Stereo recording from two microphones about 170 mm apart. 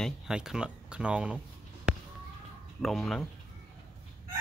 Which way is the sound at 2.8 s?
Centre (ahead or behind).